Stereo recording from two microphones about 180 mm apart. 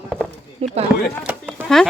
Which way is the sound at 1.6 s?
Centre (ahead or behind).